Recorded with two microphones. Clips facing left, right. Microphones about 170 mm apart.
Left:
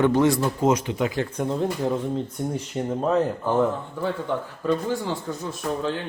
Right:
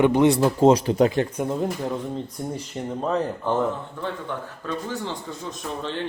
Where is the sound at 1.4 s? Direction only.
5° right (ahead or behind).